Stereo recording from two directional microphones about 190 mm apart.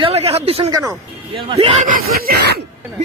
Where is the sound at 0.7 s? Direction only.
15° right (ahead or behind).